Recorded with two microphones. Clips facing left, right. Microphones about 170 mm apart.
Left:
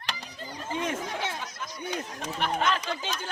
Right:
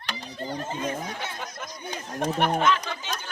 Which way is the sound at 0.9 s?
90° left.